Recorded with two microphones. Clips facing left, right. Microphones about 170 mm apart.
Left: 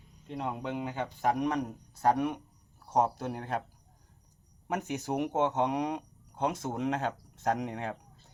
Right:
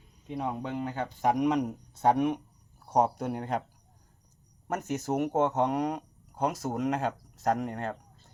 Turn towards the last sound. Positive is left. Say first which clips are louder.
# right 2 dB
turn(degrees=0)  # may be behind; listen again after turning